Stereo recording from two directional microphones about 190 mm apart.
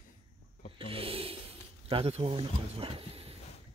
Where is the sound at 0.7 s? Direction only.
30° right (ahead or behind).